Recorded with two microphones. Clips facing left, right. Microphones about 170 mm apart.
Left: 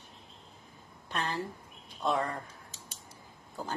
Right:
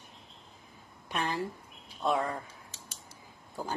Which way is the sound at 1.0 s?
15° right (ahead or behind).